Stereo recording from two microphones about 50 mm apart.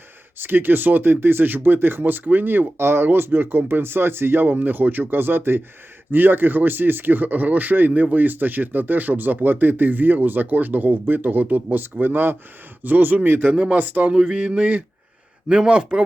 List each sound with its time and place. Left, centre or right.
0.3 s speech: right
13.6 s speech: right
14.1 s speech: centre
14.3 s speech: right
15.4 s speech: centre